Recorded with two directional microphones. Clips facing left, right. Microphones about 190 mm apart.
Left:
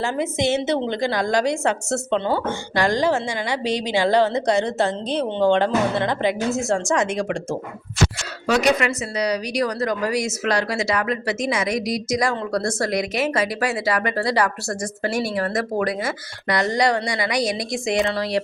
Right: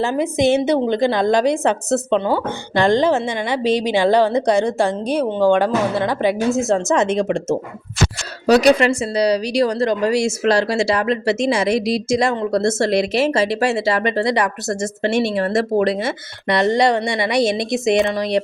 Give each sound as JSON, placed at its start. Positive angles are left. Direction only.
{"t": 0.0, "sound": "a woman's voice", "side_deg": -15}
{"t": 2.7, "sound": "a woman's voice", "side_deg": -25}
{"t": 8.4, "sound": "a woman's voice", "side_deg": -35}